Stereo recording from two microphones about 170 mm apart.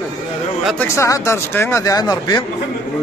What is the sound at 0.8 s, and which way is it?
Speech, 15° left (ahead or behind).